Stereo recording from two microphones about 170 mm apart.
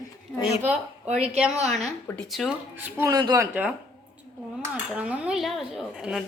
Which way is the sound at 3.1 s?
20° right (ahead or behind).